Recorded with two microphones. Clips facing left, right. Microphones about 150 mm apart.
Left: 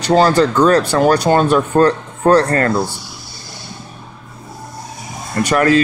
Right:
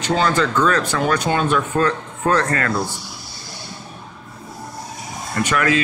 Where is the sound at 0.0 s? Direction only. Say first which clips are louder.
Left 7 dB; 35° left (ahead or behind).